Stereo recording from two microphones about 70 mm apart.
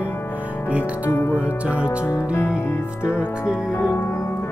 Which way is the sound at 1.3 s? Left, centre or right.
Centre.